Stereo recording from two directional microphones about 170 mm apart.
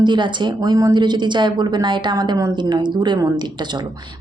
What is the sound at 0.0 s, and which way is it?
A woman's voice, 25° right (ahead or behind).